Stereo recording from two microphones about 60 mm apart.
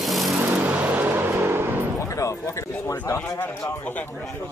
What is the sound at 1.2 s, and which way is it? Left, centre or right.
Vehicle, right.